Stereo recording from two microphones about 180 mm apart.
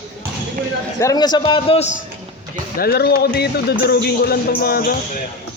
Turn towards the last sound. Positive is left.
turn(degrees=55)  # may be behind; listen again after turning